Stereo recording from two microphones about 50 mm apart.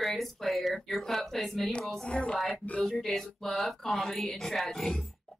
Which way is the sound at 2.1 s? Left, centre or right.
Centre.